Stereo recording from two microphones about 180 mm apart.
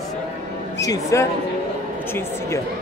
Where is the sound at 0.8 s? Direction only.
20° left (ahead or behind).